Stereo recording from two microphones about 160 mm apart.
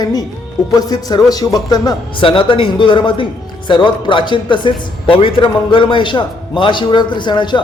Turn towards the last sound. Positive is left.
turn(degrees=30)  # may be behind; listen again after turning